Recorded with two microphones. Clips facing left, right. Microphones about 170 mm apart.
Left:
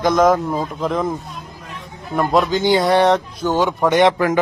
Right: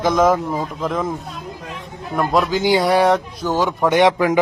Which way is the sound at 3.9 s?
15° right (ahead or behind).